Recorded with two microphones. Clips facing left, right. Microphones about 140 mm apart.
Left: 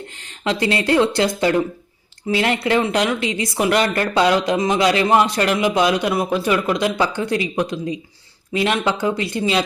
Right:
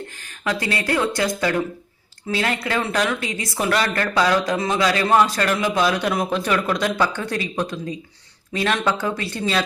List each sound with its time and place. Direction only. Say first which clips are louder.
0.4 s speech: left 4 dB; 25° left (ahead or behind)